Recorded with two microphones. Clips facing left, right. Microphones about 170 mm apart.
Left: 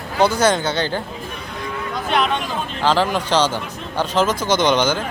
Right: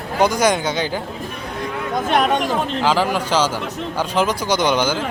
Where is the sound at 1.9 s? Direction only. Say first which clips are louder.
Right 3 dB; 45° right (ahead or behind).